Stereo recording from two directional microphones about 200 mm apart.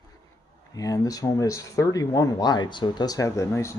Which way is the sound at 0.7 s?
15° left (ahead or behind).